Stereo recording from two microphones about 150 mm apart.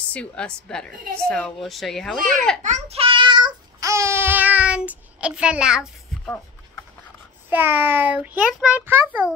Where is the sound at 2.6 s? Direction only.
45° right (ahead or behind); by 6.4 s 5° left (ahead or behind).